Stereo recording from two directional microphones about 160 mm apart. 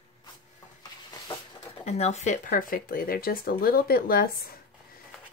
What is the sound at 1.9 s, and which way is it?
Speech, 45° left (ahead or behind).